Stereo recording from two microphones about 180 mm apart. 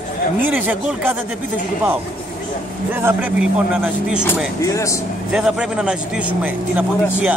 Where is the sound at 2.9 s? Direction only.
10° right (ahead or behind).